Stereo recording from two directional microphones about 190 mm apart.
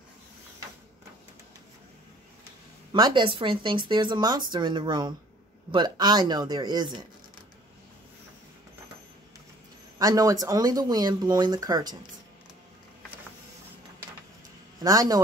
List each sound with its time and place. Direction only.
2.9 s speech: 25° right (ahead or behind)
9.9 s speech: 20° right (ahead or behind)
14.8 s speech: 20° right (ahead or behind)